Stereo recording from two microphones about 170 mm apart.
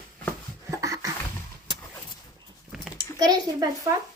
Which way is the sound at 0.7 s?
20° right (ahead or behind).